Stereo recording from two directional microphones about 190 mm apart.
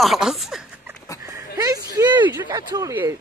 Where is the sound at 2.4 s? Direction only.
20° right (ahead or behind).